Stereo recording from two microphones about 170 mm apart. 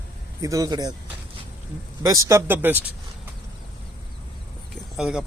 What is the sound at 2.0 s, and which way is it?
Speech, 20° right (ahead or behind).